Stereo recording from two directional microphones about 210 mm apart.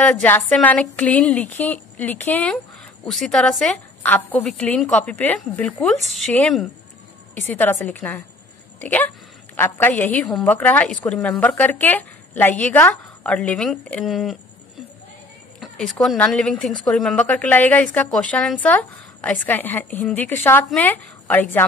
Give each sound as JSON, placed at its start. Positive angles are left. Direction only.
{"t": 0.0, "sound": "a woman's voice", "side_deg": 10}
{"t": 15.6, "sound": "a woman's voice", "side_deg": 0}